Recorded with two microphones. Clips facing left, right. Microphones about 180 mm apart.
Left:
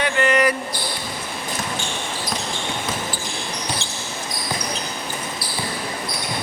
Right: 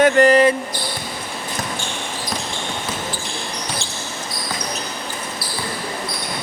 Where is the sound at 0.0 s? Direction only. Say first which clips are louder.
Right 7 dB; 40° right (ahead or behind).